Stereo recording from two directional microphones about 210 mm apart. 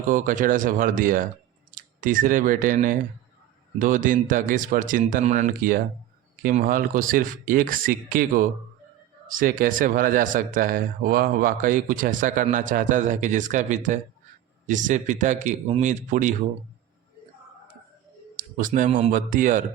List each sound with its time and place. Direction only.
0.1 s speech: 40° right (ahead or behind)
18.3 s speech: 40° right (ahead or behind)